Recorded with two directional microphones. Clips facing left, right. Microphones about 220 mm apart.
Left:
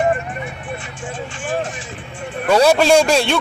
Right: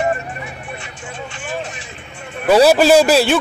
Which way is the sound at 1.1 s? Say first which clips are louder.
Left 3 dB; 50° left (ahead or behind).